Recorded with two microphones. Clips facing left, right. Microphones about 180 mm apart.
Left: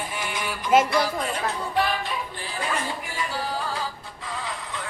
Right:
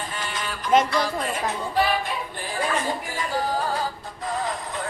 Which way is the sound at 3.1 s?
45° right (ahead or behind).